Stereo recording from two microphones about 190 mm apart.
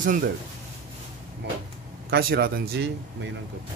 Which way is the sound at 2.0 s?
55° right (ahead or behind).